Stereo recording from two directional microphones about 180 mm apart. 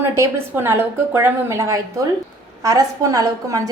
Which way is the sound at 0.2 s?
15° right (ahead or behind).